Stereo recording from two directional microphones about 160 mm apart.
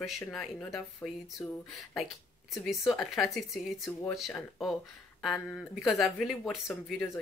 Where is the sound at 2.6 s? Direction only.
Centre (ahead or behind).